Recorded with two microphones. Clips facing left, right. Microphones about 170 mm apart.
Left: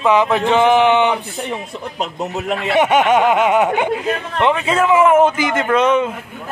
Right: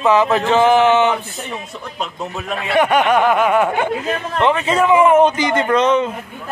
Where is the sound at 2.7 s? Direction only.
20° left (ahead or behind).